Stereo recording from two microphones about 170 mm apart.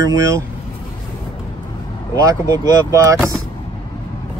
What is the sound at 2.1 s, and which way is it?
Speech, 20° right (ahead or behind).